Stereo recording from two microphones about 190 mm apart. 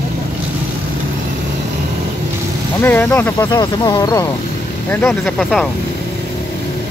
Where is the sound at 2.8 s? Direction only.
10° left (ahead or behind).